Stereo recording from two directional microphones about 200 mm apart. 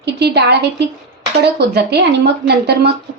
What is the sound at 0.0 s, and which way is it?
A woman's voice, 55° right (ahead or behind).